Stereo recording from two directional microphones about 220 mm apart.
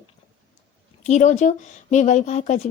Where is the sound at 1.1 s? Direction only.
35° left (ahead or behind).